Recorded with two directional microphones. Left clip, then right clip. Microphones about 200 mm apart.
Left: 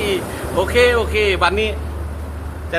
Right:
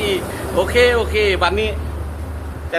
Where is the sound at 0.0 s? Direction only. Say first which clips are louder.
Even; 5° left (ahead or behind).